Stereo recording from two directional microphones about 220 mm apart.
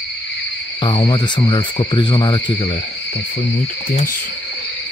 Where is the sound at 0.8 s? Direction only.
20° left (ahead or behind).